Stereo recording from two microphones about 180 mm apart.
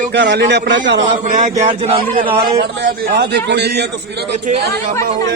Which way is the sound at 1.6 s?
35° right (ahead or behind).